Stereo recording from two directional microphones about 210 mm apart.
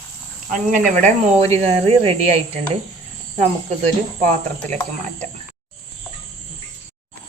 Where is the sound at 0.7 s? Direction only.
35° right (ahead or behind).